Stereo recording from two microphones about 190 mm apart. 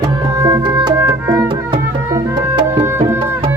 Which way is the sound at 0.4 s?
20° right (ahead or behind).